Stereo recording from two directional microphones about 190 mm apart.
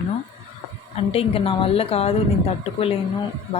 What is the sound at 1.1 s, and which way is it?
Speech, 30° left (ahead or behind).